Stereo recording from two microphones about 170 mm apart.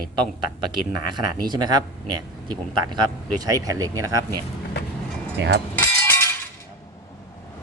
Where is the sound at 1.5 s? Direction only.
25° right (ahead or behind).